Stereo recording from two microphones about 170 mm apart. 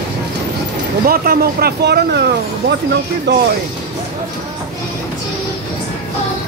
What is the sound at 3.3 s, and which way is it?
Speech, 90° right.